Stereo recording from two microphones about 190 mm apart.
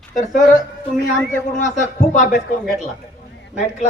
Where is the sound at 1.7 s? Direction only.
40° left (ahead or behind).